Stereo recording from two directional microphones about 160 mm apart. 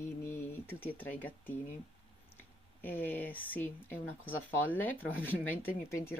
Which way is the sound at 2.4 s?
10° left (ahead or behind).